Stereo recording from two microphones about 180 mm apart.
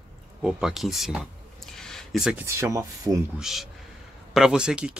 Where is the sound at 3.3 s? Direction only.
Centre (ahead or behind).